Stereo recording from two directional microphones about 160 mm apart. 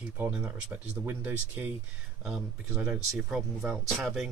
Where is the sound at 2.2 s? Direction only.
Centre (ahead or behind).